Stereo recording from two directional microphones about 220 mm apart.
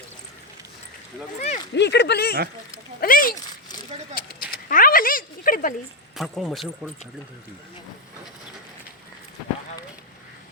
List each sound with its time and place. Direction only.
1.4 s speech: 30° left (ahead or behind)
1.7 s speech: 50° left (ahead or behind)
4.5 s cat: 40° left (ahead or behind)
6.1 s a man's voice: centre (ahead or behind)